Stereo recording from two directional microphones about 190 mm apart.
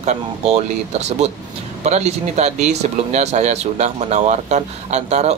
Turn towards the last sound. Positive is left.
turn(degrees=-35)  # may be behind; listen again after turning